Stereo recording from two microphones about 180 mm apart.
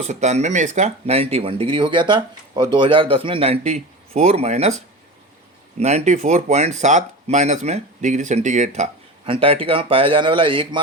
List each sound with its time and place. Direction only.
0.0 s speech: 40° right (ahead or behind)
5.8 s speech: 40° right (ahead or behind)